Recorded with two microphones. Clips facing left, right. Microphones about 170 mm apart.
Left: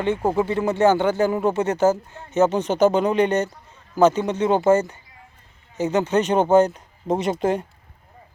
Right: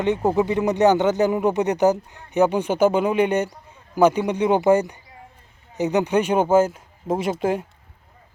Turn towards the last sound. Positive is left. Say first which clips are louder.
# left 1 dB
turn(degrees=-5)  # may be behind; listen again after turning